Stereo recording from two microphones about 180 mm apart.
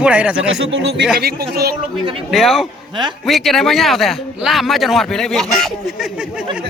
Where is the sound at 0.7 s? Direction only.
75° right (ahead or behind).